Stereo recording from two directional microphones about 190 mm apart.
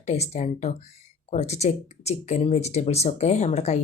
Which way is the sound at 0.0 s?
35° left (ahead or behind).